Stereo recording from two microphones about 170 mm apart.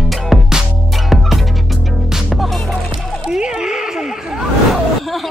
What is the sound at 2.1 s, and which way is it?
Music, centre (ahead or behind).